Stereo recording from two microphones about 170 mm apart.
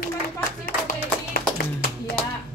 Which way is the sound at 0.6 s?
60° left (ahead or behind).